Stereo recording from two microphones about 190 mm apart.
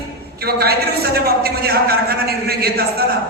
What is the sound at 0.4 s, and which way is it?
A man's voice, 55° right (ahead or behind).